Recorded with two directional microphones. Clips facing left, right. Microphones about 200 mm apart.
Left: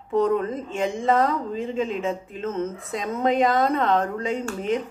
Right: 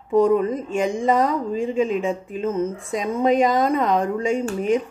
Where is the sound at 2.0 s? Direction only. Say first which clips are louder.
Right 4 dB; 10° right (ahead or behind).